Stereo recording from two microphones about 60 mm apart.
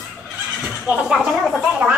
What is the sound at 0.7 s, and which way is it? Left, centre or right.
Speech, centre.